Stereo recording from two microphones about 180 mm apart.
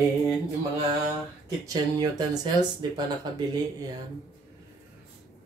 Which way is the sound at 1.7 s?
20° right (ahead or behind).